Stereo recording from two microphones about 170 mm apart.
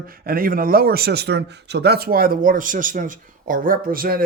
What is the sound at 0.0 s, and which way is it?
A man's voice, 60° right (ahead or behind).